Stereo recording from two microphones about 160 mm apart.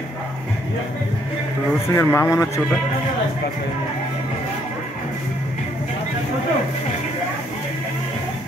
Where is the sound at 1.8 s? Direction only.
15° left (ahead or behind).